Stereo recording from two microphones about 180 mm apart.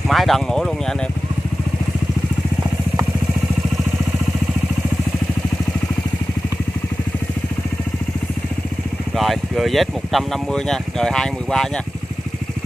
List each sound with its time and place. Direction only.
0.1 s speech: centre (ahead or behind)
9.1 s speech: centre (ahead or behind)